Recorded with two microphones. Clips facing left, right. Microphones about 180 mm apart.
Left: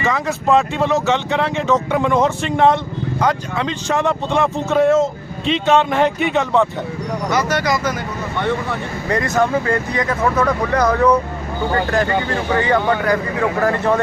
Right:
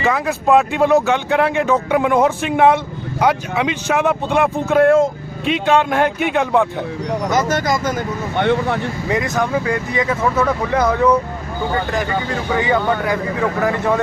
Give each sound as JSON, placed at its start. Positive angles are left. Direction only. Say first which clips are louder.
{"t": 0.0, "sound": "speech", "louder": "right 2 dB", "side_deg": 0}
{"t": 7.3, "sound": "speech", "louder": "even", "side_deg": -45}
{"t": 8.4, "sound": "speech", "louder": "right 4 dB", "side_deg": -65}
{"t": 9.0, "sound": "speech", "louder": "left 1 dB", "side_deg": -20}
{"t": 9.3, "sound": "speech", "louder": "left 2 dB", "side_deg": 0}